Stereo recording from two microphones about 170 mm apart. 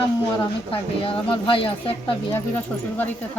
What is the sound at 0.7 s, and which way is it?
Speech, 35° left (ahead or behind).